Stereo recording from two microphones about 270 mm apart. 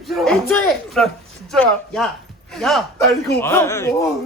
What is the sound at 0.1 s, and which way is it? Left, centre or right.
Speech, centre.